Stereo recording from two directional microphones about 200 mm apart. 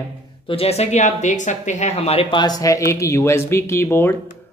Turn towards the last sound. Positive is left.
turn(degrees=10)  # may be behind; listen again after turning